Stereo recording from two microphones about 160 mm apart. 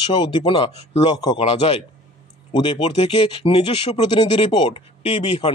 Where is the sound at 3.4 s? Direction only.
30° left (ahead or behind).